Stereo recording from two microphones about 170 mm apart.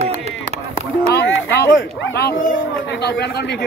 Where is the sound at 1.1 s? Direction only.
80° left.